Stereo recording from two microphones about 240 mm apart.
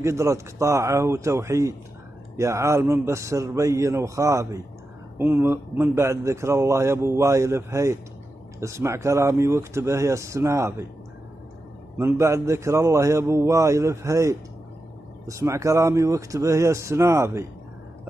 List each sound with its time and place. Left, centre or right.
0.0 s speech: centre
12.0 s speech: centre